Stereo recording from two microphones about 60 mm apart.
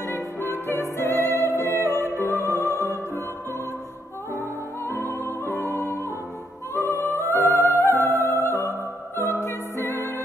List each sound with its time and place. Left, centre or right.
0.0 s music: left
4.4 s music: left
5.2 s music: left